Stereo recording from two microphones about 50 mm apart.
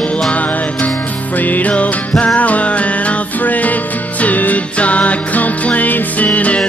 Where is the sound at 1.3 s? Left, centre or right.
Left.